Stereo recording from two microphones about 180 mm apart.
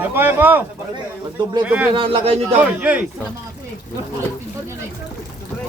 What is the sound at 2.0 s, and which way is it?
Speech, 30° right (ahead or behind).